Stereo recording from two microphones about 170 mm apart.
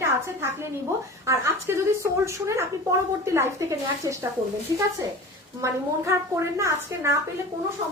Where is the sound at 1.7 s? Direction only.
15° right (ahead or behind).